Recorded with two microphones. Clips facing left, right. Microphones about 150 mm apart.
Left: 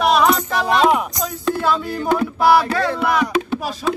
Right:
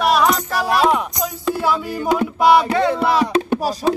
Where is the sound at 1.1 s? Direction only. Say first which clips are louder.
Even; 10° right (ahead or behind); by 3.4 s 30° right (ahead or behind).